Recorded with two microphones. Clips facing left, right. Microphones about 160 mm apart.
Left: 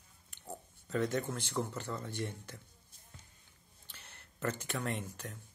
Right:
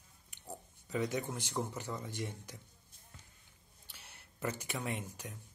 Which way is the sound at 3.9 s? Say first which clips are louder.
Left 1 dB; 10° right (ahead or behind).